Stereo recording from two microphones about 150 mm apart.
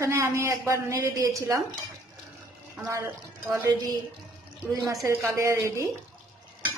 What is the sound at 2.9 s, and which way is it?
A woman's voice, 20° right (ahead or behind).